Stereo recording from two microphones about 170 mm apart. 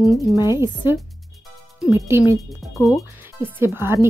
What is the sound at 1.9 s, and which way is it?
Speech, 15° right (ahead or behind).